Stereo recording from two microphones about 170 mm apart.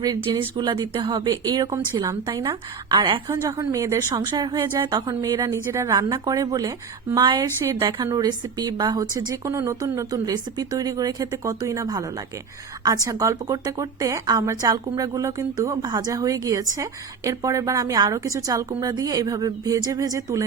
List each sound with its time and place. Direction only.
0.0 s a woman's voice: 25° right (ahead or behind)